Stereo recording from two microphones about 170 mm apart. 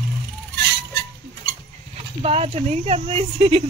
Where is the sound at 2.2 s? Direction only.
35° right (ahead or behind).